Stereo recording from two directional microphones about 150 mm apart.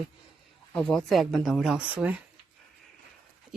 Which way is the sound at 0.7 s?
5° left (ahead or behind).